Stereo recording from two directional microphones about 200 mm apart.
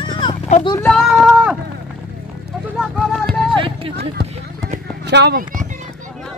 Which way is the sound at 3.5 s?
25° right (ahead or behind).